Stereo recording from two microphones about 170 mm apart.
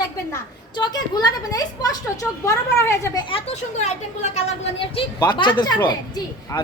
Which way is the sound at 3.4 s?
40° left (ahead or behind).